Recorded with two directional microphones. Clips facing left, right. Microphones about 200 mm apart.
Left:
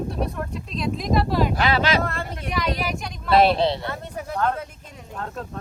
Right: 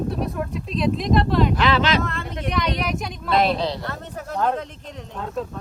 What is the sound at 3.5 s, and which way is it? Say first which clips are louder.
Speech: left 3 dB; 30° left (ahead or behind).